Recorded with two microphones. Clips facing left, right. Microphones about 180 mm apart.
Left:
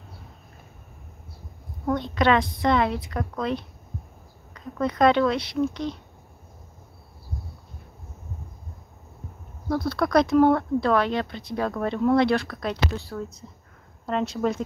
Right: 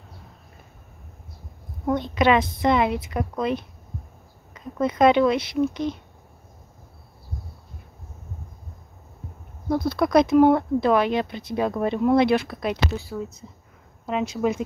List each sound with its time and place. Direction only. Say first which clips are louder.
1.9 s speech: right 2 dB; 10° right (ahead or behind)
4.6 s speech: right 2 dB; 20° right (ahead or behind)
9.7 s speech: right 2 dB; 20° right (ahead or behind)